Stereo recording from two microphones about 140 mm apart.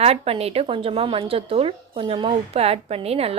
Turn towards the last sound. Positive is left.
turn(degrees=-45)  # may be behind; listen again after turning